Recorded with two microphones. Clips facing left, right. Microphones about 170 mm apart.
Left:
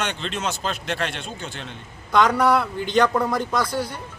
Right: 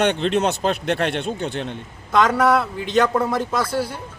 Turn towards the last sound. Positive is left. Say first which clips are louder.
# right 2 dB
turn(degrees=-5)  # may be behind; listen again after turning